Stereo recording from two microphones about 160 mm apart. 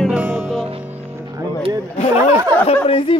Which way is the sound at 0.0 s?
5° right (ahead or behind).